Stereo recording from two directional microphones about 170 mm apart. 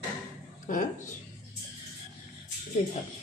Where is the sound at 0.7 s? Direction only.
50° left (ahead or behind).